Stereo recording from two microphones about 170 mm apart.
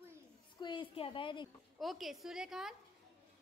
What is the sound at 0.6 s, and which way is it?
Speech, 25° left (ahead or behind).